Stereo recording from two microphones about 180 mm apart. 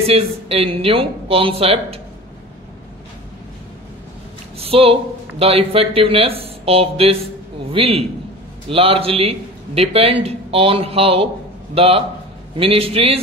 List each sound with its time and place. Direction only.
0.0 s speech: 35° right (ahead or behind)
4.6 s speech: 35° right (ahead or behind)